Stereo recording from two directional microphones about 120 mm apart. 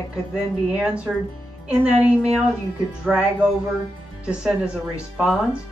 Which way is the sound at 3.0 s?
10° right (ahead or behind).